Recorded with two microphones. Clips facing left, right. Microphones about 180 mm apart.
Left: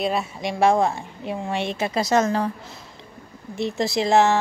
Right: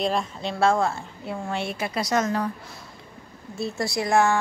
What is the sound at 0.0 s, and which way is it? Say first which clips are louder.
A woman's voice: left 1 dB; 5° left (ahead or behind).